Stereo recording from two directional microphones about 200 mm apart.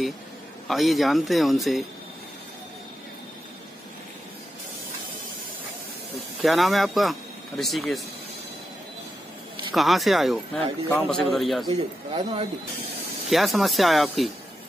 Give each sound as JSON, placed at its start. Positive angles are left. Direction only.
{"t": 0.7, "sound": "a man's voice", "side_deg": 0}
{"t": 6.4, "sound": "speech", "side_deg": 0}
{"t": 9.8, "sound": "a man's voice", "side_deg": 0}
{"t": 11.7, "sound": "speech", "side_deg": -30}
{"t": 13.3, "sound": "a man's voice", "side_deg": 0}